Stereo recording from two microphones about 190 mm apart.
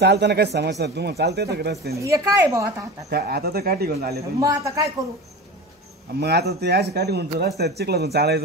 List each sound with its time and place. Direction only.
0.0 s speech: 60° right (ahead or behind)
2.0 s a woman's voice: 15° right (ahead or behind)
3.1 s speech: 55° right (ahead or behind)
4.2 s a woman's voice: 15° right (ahead or behind)
6.1 s speech: 60° right (ahead or behind)